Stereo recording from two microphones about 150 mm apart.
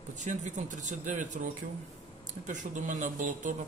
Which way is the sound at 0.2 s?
50° right (ahead or behind).